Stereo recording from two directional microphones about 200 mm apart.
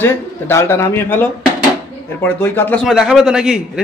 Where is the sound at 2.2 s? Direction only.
10° left (ahead or behind).